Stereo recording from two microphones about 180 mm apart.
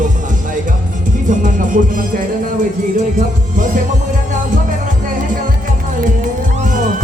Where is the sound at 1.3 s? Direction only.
45° right (ahead or behind).